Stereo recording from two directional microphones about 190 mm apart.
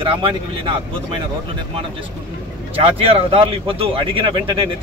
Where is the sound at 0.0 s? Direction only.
25° right (ahead or behind).